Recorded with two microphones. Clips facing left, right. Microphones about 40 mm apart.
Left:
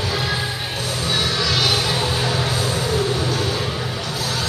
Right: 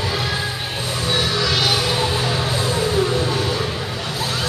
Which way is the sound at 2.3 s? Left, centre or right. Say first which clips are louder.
Right 1 dB; right.